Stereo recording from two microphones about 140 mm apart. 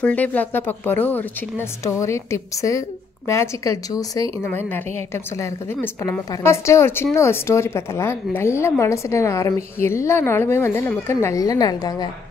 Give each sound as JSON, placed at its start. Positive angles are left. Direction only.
{"t": 0.0, "sound": "a woman's voice", "side_deg": 10}
{"t": 4.4, "sound": "a woman's voice", "side_deg": 15}